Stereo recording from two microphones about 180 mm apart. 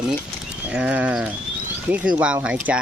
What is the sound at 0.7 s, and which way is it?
Speech, 5° right (ahead or behind).